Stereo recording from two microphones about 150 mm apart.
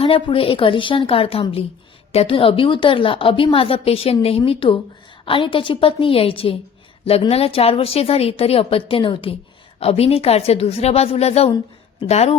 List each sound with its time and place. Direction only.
0.0 s a woman's voice: 35° left (ahead or behind)